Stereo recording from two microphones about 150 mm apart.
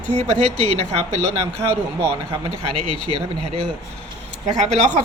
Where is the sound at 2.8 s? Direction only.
35° left (ahead or behind).